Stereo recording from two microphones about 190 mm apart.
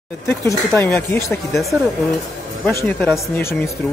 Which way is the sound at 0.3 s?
15° left (ahead or behind).